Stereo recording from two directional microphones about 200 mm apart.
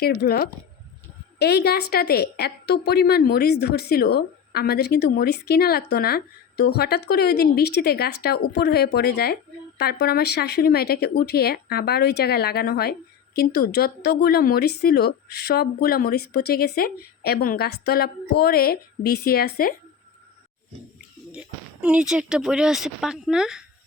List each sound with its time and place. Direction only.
0.0 s a woman's voice: 50° left (ahead or behind)
21.3 s speech: 5° right (ahead or behind)